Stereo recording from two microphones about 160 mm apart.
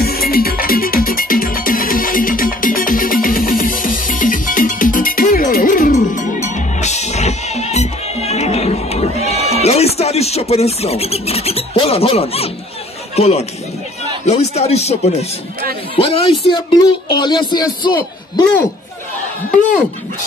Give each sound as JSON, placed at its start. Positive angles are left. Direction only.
{"t": 0.0, "sound": "music", "side_deg": 70}
{"t": 13.1, "sound": "speech", "side_deg": 40}